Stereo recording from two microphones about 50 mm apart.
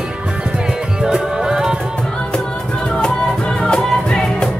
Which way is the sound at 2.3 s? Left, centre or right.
Centre.